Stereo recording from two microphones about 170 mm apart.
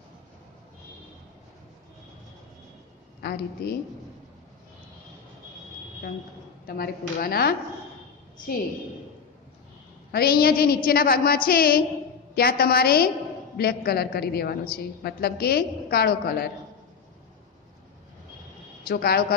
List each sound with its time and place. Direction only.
3.2 s a woman's voice: 70° left (ahead or behind)
6.6 s a woman's voice: 60° left (ahead or behind)
10.1 s a woman's voice: 65° left (ahead or behind)
18.9 s a woman's voice: 65° left (ahead or behind)